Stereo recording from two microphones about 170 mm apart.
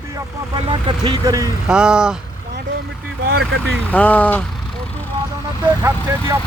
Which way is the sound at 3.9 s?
10° left (ahead or behind).